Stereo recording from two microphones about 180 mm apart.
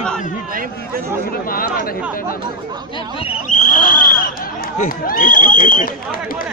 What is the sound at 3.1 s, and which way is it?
Speech, 40° left (ahead or behind).